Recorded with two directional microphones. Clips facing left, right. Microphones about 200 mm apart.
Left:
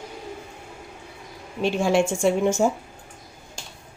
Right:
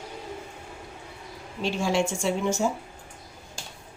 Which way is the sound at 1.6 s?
55° left (ahead or behind).